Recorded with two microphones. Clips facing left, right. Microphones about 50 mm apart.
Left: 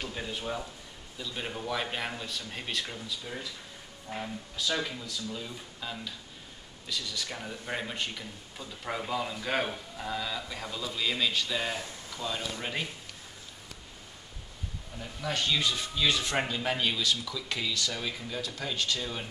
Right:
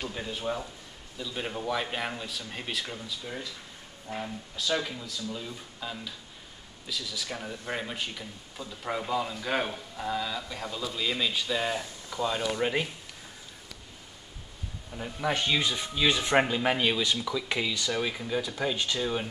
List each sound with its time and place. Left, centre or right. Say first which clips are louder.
0.0 s speech: right 2 dB; centre
12.2 s speech: right 6 dB; centre
15.0 s speech: right 4 dB; right